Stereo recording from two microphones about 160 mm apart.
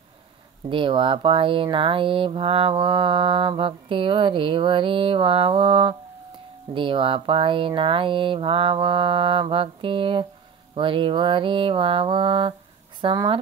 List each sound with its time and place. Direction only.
0.7 s speech: 30° right (ahead or behind)